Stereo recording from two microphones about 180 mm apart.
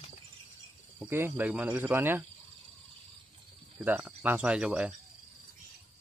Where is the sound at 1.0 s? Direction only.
10° right (ahead or behind).